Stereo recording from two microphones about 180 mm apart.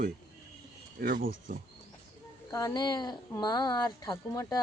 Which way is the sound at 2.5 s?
20° left (ahead or behind).